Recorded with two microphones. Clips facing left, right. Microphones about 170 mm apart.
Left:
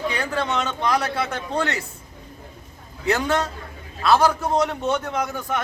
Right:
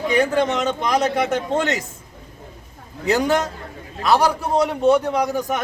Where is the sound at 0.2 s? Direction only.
20° right (ahead or behind).